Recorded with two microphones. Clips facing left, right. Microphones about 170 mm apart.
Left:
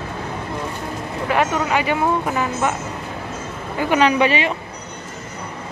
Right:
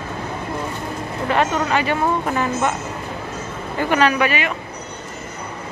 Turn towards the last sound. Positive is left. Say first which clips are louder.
# left 2 dB
turn(degrees=25)  # may be behind; listen again after turning